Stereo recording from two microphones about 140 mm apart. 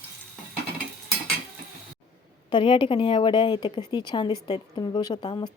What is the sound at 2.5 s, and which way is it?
A woman's voice, 35° left (ahead or behind).